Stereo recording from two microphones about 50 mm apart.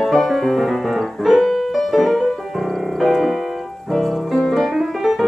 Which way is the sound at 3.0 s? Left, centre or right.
Centre.